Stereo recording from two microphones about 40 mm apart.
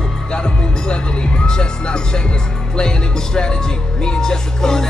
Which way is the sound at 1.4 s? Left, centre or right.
Centre.